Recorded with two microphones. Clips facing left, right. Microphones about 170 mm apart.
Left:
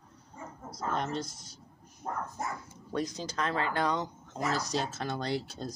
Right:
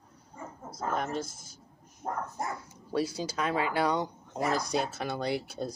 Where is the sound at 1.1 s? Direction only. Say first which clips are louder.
Right 1 dB; 5° right (ahead or behind).